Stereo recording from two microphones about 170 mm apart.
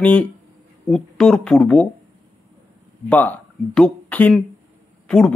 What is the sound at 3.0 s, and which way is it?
Speech, 10° left (ahead or behind).